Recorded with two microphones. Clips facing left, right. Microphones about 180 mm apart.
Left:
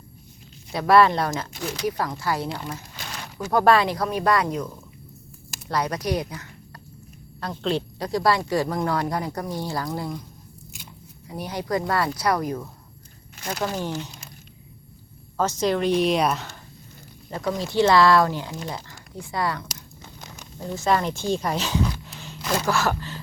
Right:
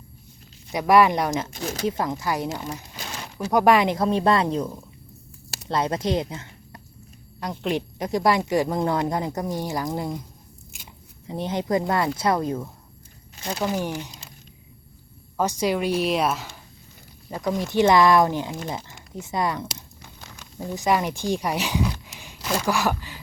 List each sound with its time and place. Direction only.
0.7 s speech: 15° right (ahead or behind)
1.6 s speech: 45° right (ahead or behind)
1.9 s speech: 20° right (ahead or behind)
11.3 s speech: 25° right (ahead or behind)
13.6 s speech: 15° right (ahead or behind)
15.4 s speech: 10° right (ahead or behind)
17.2 s speech: 15° right (ahead or behind)
20.7 s speech: 15° right (ahead or behind)